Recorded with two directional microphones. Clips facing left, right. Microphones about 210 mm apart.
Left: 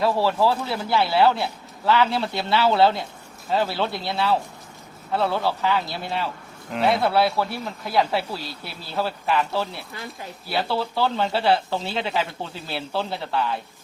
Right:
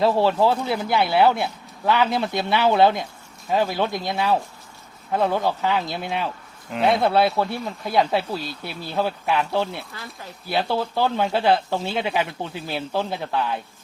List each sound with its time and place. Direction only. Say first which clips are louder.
0.0 s speech: right 2 dB; 25° right (ahead or behind)
6.7 s speech: right 1 dB; centre (ahead or behind)
7.0 s speech: right 2 dB; 20° right (ahead or behind)